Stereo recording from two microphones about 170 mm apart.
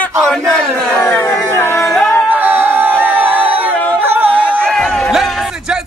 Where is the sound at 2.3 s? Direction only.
10° right (ahead or behind).